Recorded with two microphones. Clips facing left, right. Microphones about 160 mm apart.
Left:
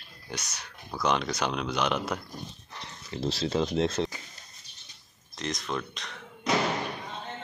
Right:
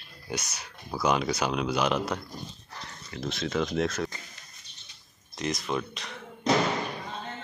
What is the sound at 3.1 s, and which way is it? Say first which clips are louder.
Speech: left 2 dB; 30° left (ahead or behind).